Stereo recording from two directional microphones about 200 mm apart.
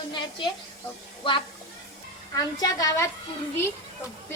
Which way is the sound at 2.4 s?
20° left (ahead or behind).